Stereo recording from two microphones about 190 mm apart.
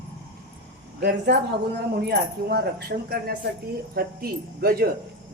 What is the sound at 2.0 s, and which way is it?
Speech, 55° right (ahead or behind).